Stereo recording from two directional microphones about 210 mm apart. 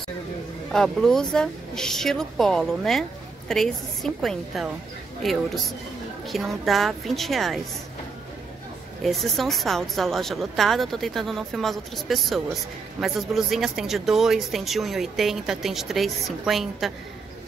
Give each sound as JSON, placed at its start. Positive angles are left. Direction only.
{"t": 0.7, "sound": "speech", "side_deg": 0}
{"t": 9.0, "sound": "speech", "side_deg": 0}